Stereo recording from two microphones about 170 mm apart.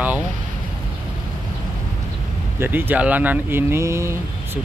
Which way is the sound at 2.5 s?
10° right (ahead or behind).